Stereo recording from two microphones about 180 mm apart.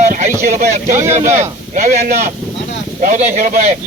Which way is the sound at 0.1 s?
50° right (ahead or behind).